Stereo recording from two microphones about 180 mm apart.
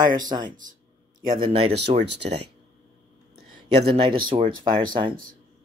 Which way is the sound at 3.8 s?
30° right (ahead or behind).